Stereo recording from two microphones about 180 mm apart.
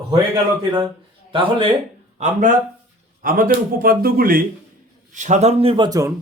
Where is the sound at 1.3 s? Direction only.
30° right (ahead or behind).